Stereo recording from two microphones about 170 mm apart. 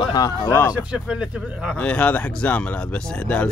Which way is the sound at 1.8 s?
5° left (ahead or behind).